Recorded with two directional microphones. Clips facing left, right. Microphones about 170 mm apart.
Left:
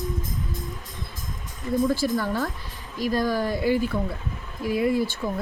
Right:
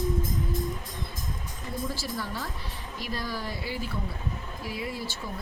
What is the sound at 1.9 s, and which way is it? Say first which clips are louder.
Speech: left 10 dB; 55° left (ahead or behind).